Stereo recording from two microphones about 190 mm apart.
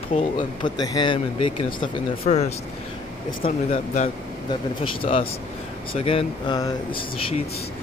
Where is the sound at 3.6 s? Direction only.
40° left (ahead or behind).